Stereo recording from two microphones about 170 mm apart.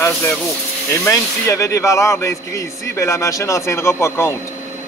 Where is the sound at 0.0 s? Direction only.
15° left (ahead or behind).